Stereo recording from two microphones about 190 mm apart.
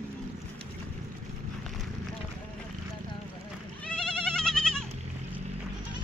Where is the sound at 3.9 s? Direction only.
5° left (ahead or behind).